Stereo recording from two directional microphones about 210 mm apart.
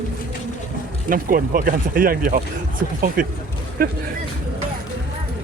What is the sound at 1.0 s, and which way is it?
Speech, 40° right (ahead or behind).